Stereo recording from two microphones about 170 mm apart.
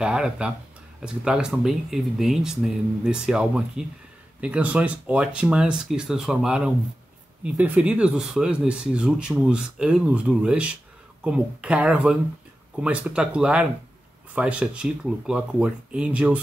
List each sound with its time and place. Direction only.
0.0 s speech: 5° right (ahead or behind)